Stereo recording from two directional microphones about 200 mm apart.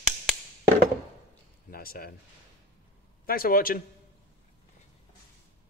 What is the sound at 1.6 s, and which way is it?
Speech, 50° left (ahead or behind).